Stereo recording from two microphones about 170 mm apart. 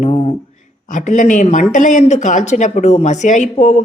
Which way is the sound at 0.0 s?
40° left (ahead or behind).